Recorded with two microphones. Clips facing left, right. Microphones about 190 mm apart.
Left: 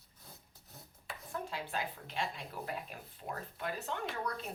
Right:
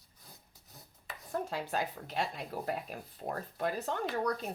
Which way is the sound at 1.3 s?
45° right (ahead or behind).